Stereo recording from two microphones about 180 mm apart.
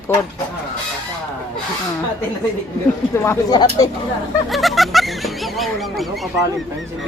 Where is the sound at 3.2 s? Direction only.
20° left (ahead or behind).